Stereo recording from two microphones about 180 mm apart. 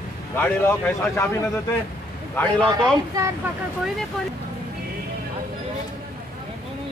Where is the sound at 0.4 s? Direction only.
10° left (ahead or behind).